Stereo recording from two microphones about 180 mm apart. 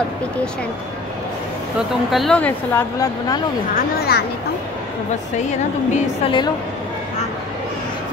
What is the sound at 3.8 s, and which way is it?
Speech, 60° left (ahead or behind).